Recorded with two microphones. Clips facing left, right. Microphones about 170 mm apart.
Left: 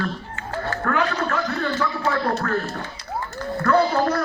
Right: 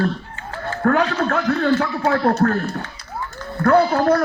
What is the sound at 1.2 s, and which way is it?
A man's voice, 60° right (ahead or behind).